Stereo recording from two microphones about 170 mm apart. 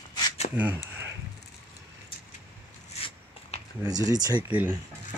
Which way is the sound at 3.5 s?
40° left (ahead or behind).